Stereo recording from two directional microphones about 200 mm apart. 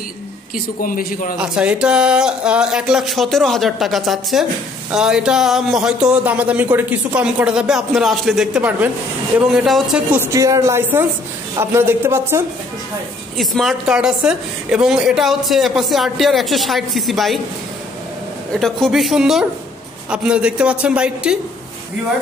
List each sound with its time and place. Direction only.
0.7 s a man's voice: 45° left (ahead or behind)
1.4 s a woman's voice: 5° right (ahead or behind)
13.4 s a woman's voice: centre (ahead or behind)
18.6 s a woman's voice: centre (ahead or behind)